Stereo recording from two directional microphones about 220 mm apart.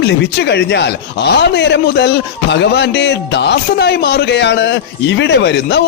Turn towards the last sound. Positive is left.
turn(degrees=50)  # may be behind; listen again after turning